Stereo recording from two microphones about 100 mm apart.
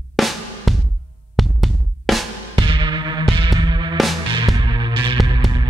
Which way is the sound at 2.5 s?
55° right (ahead or behind).